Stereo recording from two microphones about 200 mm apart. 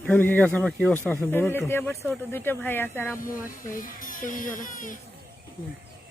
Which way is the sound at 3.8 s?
45° left (ahead or behind).